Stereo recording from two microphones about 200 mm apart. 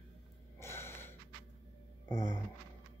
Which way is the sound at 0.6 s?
10° left (ahead or behind).